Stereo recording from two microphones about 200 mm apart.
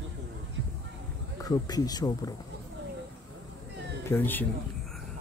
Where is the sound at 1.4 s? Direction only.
20° left (ahead or behind).